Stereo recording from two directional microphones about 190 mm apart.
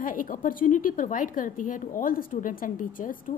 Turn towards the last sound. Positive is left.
turn(degrees=45)  # may be behind; listen again after turning